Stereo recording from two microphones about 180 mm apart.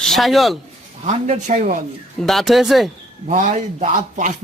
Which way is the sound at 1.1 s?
40° right (ahead or behind).